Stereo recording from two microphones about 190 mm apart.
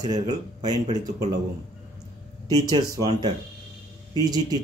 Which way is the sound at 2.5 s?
20° right (ahead or behind).